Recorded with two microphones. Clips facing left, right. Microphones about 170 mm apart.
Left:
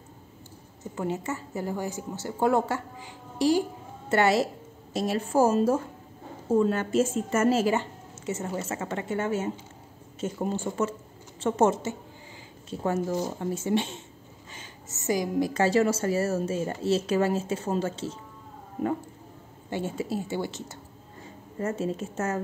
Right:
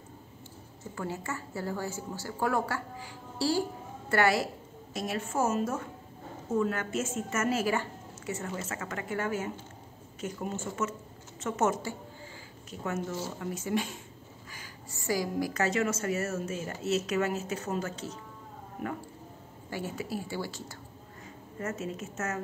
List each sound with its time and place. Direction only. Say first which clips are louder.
0.9 s a woman's voice: left 6 dB; 20° left (ahead or behind)
19.7 s a woman's voice: left 5 dB; 25° left (ahead or behind)